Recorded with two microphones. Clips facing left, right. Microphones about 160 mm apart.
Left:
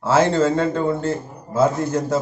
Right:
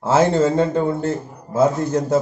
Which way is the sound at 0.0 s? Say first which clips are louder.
Right 1 dB; 15° right (ahead or behind).